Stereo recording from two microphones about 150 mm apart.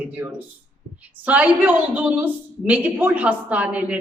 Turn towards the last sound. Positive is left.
turn(degrees=-10)  # may be behind; listen again after turning